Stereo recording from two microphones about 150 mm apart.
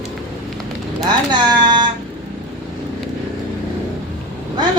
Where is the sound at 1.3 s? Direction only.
30° right (ahead or behind).